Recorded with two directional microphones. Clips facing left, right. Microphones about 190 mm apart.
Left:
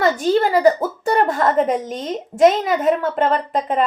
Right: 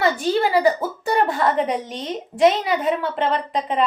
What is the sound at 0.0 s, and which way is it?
A woman's voice, 45° left (ahead or behind).